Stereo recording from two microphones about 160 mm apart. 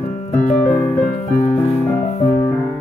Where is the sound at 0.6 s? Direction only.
20° left (ahead or behind).